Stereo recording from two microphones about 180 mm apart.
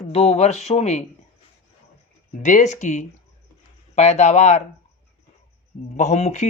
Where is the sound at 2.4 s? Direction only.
45° left (ahead or behind).